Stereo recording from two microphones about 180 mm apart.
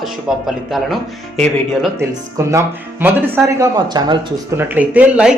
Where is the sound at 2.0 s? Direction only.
15° right (ahead or behind).